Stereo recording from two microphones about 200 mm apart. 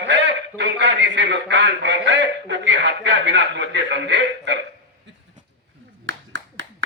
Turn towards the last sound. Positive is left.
turn(degrees=-65)  # may be behind; listen again after turning